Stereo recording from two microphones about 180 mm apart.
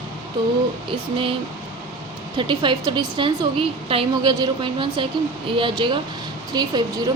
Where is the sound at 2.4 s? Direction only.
25° right (ahead or behind).